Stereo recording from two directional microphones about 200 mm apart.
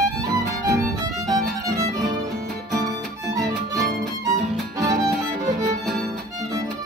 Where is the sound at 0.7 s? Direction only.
15° right (ahead or behind).